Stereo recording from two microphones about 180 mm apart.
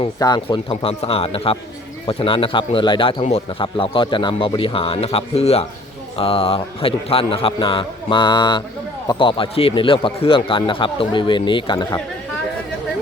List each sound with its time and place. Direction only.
0.0 s a man's voice: 25° left (ahead or behind)